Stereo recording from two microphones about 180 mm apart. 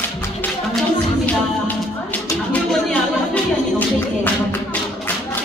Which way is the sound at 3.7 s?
10° left (ahead or behind).